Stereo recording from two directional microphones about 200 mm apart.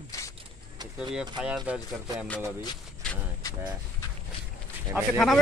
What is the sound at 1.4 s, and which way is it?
Speech, 5° right (ahead or behind).